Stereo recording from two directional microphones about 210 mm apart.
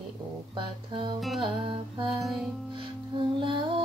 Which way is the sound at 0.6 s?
20° right (ahead or behind).